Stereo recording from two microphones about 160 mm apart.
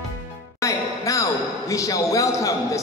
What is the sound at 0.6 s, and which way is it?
Basketball bounce, 20° left (ahead or behind).